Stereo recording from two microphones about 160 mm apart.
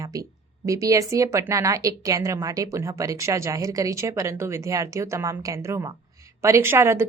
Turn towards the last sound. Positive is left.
turn(degrees=-15)  # may be behind; listen again after turning